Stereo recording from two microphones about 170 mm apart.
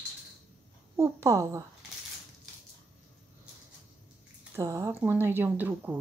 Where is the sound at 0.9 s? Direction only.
15° right (ahead or behind).